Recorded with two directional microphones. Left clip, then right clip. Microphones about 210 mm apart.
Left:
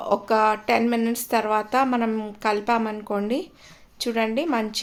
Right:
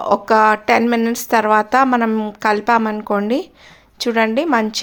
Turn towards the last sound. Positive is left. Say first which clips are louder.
# right 8 dB
turn(degrees=-20)  # may be behind; listen again after turning